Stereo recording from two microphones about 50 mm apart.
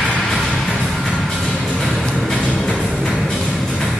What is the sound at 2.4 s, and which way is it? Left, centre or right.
Music, centre.